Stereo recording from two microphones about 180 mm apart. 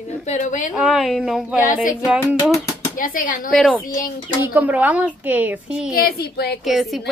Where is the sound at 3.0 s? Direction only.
50° left (ahead or behind).